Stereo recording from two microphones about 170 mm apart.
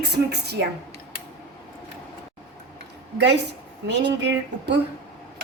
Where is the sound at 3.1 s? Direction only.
90° right.